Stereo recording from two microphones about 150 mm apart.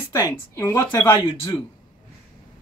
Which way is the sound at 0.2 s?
20° left (ahead or behind).